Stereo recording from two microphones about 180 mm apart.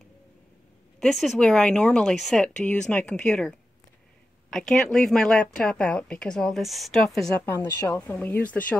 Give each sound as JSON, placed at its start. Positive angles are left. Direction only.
{"t": 0.9, "sound": "speech", "side_deg": 0}
{"t": 7.4, "sound": "speech", "side_deg": 15}